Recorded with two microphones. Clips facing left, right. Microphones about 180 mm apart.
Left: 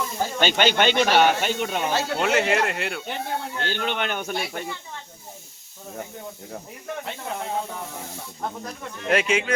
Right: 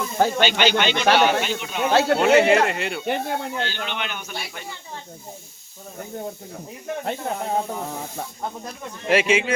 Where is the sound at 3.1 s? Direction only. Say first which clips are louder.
Right 5 dB; 60° right (ahead or behind).